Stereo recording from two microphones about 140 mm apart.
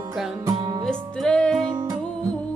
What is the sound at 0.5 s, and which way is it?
Music, 30° right (ahead or behind).